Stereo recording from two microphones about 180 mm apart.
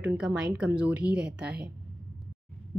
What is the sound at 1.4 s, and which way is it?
Speech, 65° right (ahead or behind).